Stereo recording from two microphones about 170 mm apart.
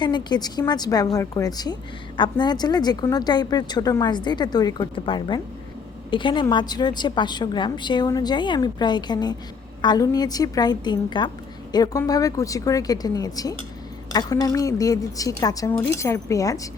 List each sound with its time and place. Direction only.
0.0 s a woman's voice: 25° left (ahead or behind)